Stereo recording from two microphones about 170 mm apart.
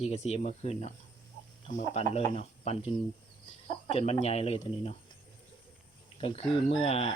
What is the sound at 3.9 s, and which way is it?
Speech, 40° left (ahead or behind).